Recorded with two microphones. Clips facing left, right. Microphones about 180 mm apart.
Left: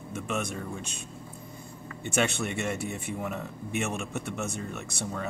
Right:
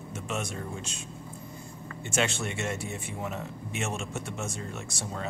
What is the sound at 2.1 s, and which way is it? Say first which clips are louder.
Speech: left 2 dB; 60° left (ahead or behind).